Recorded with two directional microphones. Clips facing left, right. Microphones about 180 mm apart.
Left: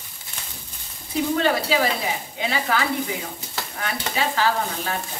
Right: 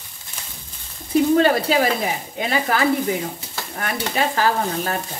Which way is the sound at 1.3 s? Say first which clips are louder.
Right 3 dB; 45° right (ahead or behind).